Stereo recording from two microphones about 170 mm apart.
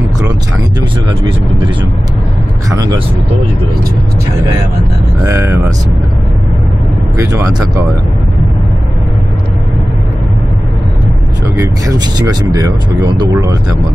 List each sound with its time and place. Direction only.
2.7 s speech: 20° right (ahead or behind)
5.2 s speech: 15° right (ahead or behind)
7.2 s speech: 20° right (ahead or behind)
12.2 s speech: 25° right (ahead or behind)